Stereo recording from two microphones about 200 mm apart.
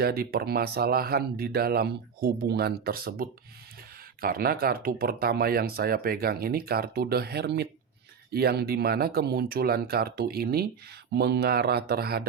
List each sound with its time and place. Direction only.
0.0 s speech: 50° right (ahead or behind)